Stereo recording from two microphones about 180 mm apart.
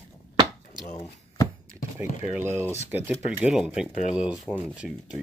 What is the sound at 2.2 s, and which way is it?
Speech, 10° right (ahead or behind).